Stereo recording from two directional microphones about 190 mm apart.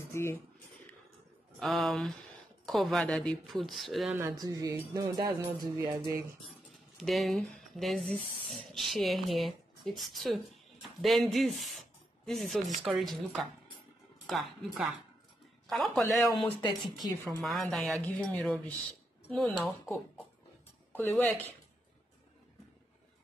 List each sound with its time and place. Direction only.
0.1 s speech: 15° left (ahead or behind)
1.6 s speech: centre (ahead or behind)
4.2 s speech: 20° right (ahead or behind)
7.0 s speech: centre (ahead or behind)
15.6 s a sound: centre (ahead or behind)
16.6 s speech: 20° left (ahead or behind)
17.4 s speech: centre (ahead or behind)
20.9 s speech: 10° left (ahead or behind)